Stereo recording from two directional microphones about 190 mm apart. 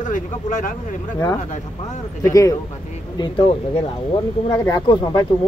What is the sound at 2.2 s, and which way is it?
Speech, 15° left (ahead or behind).